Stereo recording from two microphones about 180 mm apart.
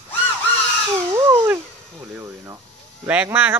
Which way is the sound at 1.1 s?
15° right (ahead or behind).